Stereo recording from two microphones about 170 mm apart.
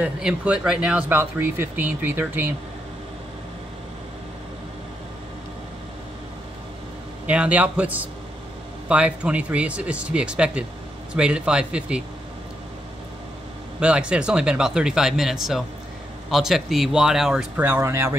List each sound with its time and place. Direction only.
0.0 s speech: 5° right (ahead or behind)
7.2 s speech: 10° right (ahead or behind)
13.7 s speech: 5° right (ahead or behind)